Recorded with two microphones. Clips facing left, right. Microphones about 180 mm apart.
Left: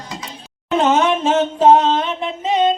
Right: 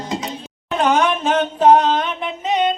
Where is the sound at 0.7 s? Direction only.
25° left (ahead or behind).